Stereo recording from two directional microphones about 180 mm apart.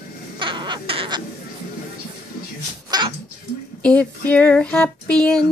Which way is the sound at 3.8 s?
10° left (ahead or behind).